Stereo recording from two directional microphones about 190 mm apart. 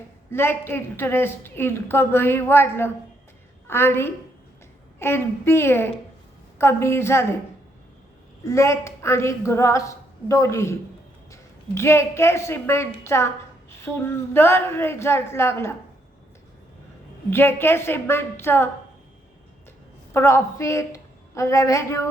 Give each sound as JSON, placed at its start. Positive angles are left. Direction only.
{"t": 0.3, "sound": "a woman's voice", "side_deg": 10}
{"t": 8.4, "sound": "a woman's voice", "side_deg": 15}
{"t": 17.3, "sound": "a woman's voice", "side_deg": 10}
{"t": 20.1, "sound": "a woman's voice", "side_deg": 15}